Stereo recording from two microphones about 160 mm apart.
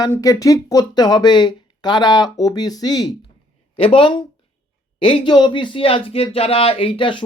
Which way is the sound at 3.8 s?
35° left (ahead or behind).